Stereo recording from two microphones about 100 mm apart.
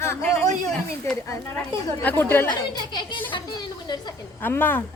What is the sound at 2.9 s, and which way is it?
Speech, 55° left (ahead or behind).